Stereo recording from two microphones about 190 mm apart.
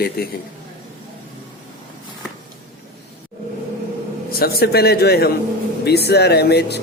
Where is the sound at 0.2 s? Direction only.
55° left (ahead or behind).